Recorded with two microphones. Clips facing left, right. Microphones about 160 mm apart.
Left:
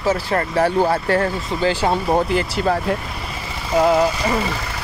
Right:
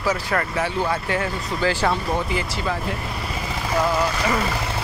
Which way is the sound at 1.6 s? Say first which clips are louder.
Left 2 dB; 20° left (ahead or behind).